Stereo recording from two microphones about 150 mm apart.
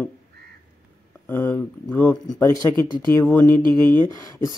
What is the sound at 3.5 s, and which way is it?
Speech, 30° right (ahead or behind).